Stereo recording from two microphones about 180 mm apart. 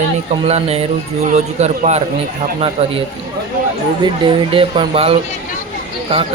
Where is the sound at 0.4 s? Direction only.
35° right (ahead or behind).